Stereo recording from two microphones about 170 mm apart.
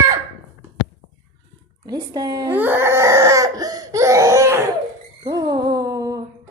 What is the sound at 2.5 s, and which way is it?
Crying, 10° right (ahead or behind).